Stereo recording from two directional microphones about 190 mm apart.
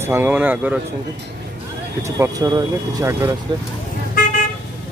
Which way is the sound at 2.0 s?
15° right (ahead or behind).